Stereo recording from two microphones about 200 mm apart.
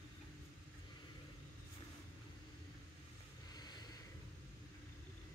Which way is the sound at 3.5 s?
20° left (ahead or behind).